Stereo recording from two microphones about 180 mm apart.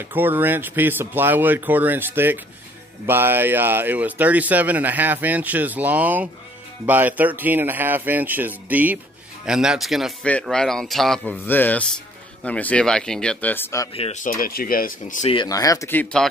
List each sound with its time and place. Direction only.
0.0 s speech: 10° right (ahead or behind); by 13.8 s 15° left (ahead or behind)
13.9 s speech: 35° left (ahead or behind)
14.2 s speech: 55° left (ahead or behind)
15.2 s speech: 25° left (ahead or behind); by 16.3 s 5° left (ahead or behind)